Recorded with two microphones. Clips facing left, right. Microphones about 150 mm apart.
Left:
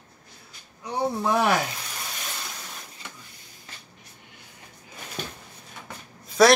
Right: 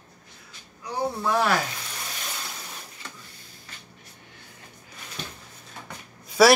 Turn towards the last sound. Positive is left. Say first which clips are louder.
# even
turn(degrees=-5)  # may be behind; listen again after turning